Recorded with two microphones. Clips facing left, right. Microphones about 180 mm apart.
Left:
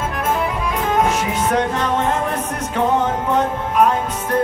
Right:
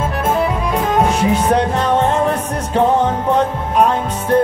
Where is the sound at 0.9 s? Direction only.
30° right (ahead or behind).